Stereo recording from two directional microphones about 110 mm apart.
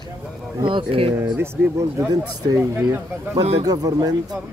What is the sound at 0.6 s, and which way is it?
Speech, 50° right (ahead or behind).